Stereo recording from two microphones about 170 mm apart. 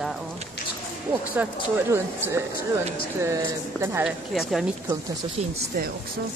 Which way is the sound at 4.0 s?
Centre (ahead or behind).